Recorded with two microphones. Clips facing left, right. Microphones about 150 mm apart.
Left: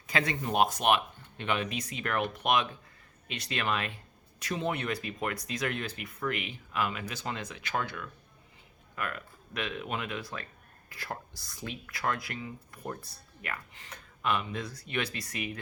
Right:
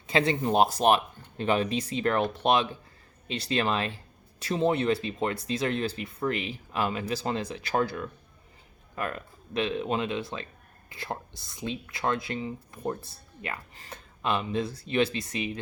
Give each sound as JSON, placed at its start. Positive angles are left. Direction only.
{"t": 0.1, "sound": "speech", "side_deg": -30}